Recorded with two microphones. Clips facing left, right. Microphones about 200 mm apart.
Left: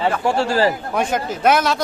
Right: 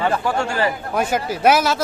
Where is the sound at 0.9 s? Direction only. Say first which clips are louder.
Even; 5° right (ahead or behind).